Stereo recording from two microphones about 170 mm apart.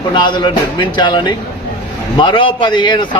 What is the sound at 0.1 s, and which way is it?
A man's voice, 25° left (ahead or behind).